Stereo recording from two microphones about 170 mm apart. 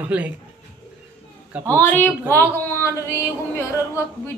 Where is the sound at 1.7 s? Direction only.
10° left (ahead or behind).